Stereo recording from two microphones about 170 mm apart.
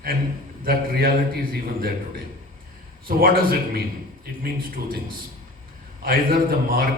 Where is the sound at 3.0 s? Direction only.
60° right (ahead or behind).